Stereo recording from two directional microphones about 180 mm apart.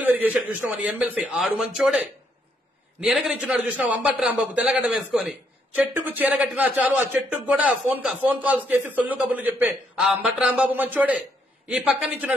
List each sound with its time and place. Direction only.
0.1 s a man's voice: 10° right (ahead or behind)